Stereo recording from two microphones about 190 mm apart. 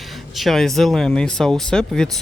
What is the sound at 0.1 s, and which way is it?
Speech, centre (ahead or behind).